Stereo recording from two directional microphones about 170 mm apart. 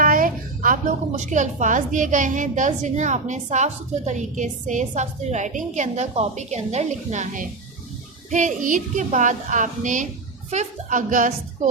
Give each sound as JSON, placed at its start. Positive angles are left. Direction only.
{"t": 0.0, "sound": "a woman's voice", "side_deg": -55}